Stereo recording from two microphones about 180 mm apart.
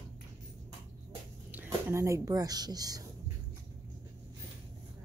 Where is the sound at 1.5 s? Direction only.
10° right (ahead or behind).